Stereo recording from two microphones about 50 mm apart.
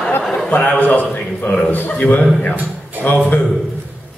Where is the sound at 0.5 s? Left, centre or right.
Left.